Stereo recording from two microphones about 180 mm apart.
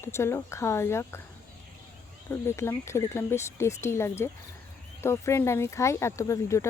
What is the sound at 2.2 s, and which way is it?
Speech, 15° left (ahead or behind).